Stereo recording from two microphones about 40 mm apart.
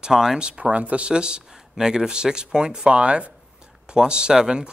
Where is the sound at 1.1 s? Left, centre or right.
Right.